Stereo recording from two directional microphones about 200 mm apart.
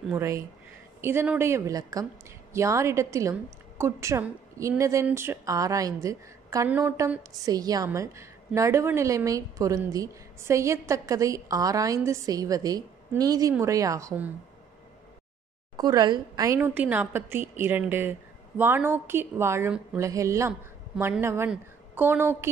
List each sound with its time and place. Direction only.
0.1 s a woman's voice: 15° right (ahead or behind)
15.7 s a woman's voice: 20° right (ahead or behind)